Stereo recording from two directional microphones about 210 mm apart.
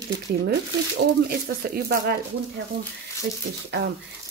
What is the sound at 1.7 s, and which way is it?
Speech, 45° right (ahead or behind).